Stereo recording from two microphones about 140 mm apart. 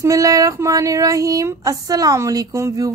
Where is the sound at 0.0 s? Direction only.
25° right (ahead or behind).